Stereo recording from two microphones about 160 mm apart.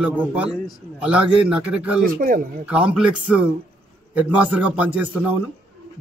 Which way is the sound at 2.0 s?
60° right (ahead or behind).